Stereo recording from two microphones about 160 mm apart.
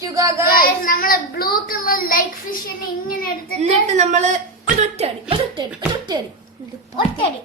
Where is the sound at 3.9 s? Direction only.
45° right (ahead or behind).